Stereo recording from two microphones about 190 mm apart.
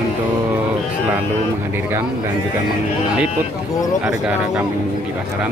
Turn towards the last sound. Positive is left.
turn(degrees=-5)  # may be behind; listen again after turning